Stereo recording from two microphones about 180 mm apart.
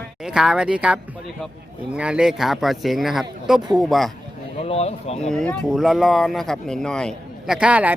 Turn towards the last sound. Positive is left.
turn(degrees=-5)  # may be behind; listen again after turning